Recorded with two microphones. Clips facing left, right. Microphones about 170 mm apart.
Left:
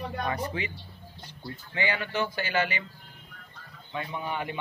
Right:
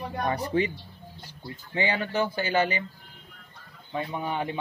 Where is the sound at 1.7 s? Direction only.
30° right (ahead or behind).